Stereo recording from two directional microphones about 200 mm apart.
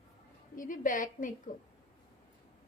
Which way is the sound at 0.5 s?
40° left (ahead or behind).